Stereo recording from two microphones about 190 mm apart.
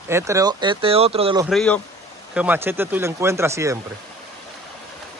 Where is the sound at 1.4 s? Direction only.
5° left (ahead or behind).